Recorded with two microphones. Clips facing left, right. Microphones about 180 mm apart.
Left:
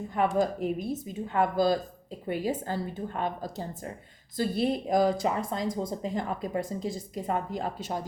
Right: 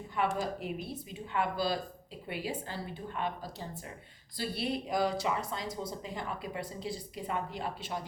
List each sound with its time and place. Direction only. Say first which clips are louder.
0.3 s speech: left 8 dB; 45° left (ahead or behind)